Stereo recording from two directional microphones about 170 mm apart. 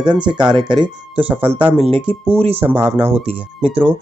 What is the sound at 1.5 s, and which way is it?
Speech, 5° left (ahead or behind).